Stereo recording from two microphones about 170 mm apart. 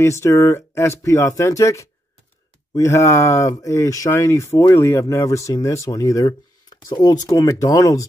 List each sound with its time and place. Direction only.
0.0 s speech: 15° left (ahead or behind)